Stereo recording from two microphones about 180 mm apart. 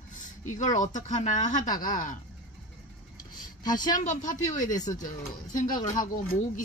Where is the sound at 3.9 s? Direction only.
45° left (ahead or behind).